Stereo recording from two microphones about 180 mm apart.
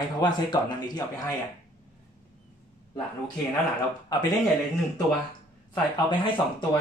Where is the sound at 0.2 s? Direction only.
25° left (ahead or behind).